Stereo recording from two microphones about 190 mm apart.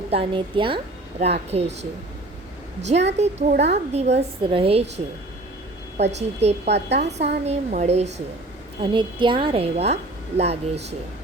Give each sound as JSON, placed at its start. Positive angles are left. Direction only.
{"t": 0.1, "sound": "a woman's voice", "side_deg": -30}
{"t": 3.1, "sound": "a woman's voice", "side_deg": -35}
{"t": 3.5, "sound": "a woman's voice", "side_deg": -60}
{"t": 3.9, "sound": "a woman's voice", "side_deg": -35}
{"t": 6.1, "sound": "a woman's voice", "side_deg": -35}
{"t": 6.7, "sound": "a woman's voice", "side_deg": -65}
{"t": 7.0, "sound": "a woman's voice", "side_deg": -35}
{"t": 8.8, "sound": "a woman's voice", "side_deg": -25}